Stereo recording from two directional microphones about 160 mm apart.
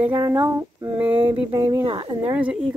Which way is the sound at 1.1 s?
35° right (ahead or behind).